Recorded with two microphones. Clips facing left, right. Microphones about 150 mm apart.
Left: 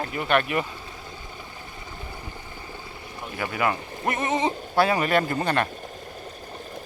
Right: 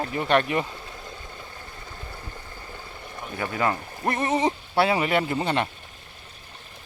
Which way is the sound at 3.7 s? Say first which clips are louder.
Even; 10° left (ahead or behind).